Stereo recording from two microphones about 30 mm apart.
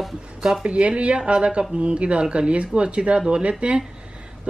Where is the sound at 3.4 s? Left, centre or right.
Right.